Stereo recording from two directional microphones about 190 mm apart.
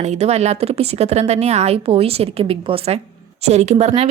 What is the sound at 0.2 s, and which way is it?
A woman's voice, 35° right (ahead or behind).